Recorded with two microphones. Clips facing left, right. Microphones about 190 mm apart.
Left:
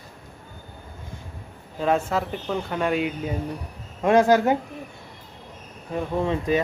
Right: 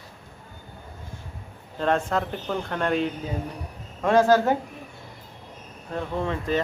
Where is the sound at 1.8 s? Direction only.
5° left (ahead or behind).